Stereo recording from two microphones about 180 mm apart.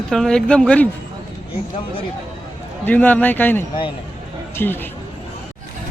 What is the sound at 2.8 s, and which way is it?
Speech, 10° left (ahead or behind).